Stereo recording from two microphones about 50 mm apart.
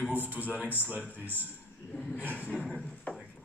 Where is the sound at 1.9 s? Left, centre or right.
Left.